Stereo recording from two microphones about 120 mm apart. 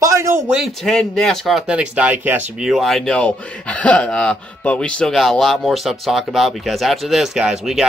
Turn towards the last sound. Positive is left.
turn(degrees=-5)  # may be behind; listen again after turning